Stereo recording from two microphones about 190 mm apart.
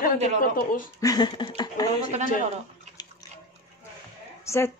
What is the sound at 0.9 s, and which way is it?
Speech, 20° left (ahead or behind).